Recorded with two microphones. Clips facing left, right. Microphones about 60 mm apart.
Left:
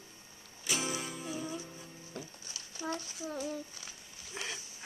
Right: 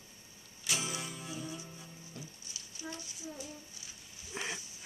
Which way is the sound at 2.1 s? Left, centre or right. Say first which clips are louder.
Left 6 dB; left.